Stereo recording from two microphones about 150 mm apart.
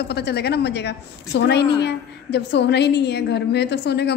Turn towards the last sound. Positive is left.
turn(degrees=90)